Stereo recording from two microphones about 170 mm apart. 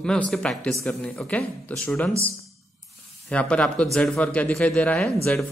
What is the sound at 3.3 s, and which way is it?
Speech, 5° left (ahead or behind).